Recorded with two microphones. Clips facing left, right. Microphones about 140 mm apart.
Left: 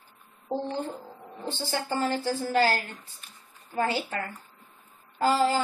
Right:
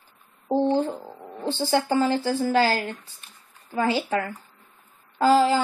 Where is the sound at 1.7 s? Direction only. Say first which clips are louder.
Right 7 dB; 90° right.